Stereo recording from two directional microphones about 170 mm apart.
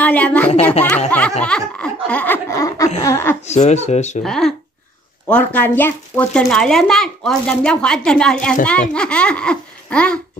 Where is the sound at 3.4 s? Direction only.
40° left (ahead or behind).